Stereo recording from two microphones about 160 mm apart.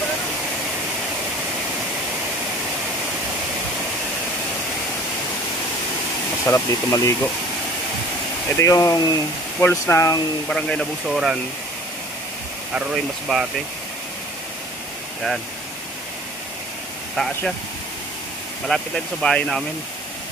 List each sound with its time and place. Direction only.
6.4 s speech: 15° left (ahead or behind)
8.5 s speech: 20° left (ahead or behind)
10.5 s speech: 5° left (ahead or behind)
12.7 s speech: 5° right (ahead or behind)
18.7 s speech: 5° left (ahead or behind)